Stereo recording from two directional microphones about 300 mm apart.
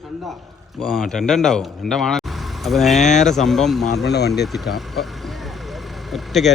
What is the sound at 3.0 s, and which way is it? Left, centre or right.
Speech, left.